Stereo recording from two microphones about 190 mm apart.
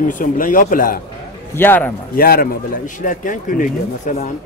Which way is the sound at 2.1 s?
50° left (ahead or behind).